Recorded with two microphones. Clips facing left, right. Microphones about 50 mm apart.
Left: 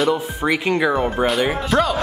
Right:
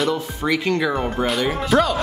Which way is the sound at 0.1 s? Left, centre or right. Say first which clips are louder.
Left 2 dB; centre.